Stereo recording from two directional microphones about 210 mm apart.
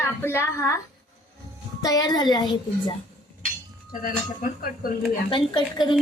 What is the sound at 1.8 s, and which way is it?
A woman's voice, 20° left (ahead or behind).